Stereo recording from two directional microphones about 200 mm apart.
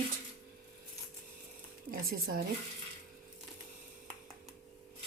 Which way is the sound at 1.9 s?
45° right (ahead or behind).